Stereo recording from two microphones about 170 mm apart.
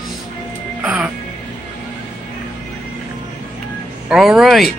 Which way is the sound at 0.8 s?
5° right (ahead or behind).